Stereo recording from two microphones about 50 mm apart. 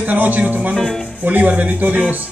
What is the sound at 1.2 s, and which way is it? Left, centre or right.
Speech, right.